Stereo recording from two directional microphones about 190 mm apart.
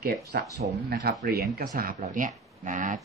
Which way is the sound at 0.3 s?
60° right (ahead or behind).